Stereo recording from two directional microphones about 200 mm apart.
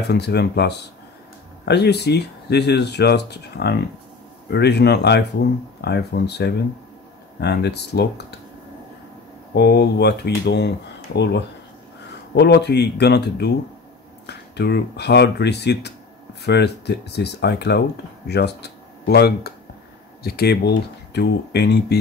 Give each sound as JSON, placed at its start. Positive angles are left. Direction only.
{"t": 0.1, "sound": "speech", "side_deg": 55}
{"t": 9.5, "sound": "speech", "side_deg": 55}
{"t": 12.4, "sound": "speech", "side_deg": 55}